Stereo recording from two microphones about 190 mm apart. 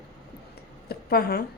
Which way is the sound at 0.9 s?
55° left (ahead or behind).